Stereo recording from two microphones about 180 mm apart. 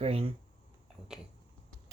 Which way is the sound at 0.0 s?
35° right (ahead or behind).